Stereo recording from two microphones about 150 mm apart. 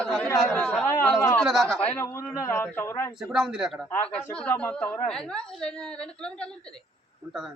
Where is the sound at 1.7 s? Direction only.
10° left (ahead or behind).